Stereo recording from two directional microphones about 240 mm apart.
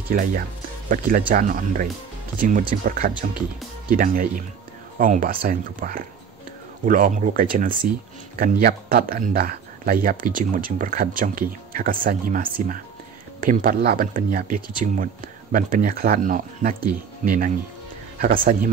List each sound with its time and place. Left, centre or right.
0.1 s speech: right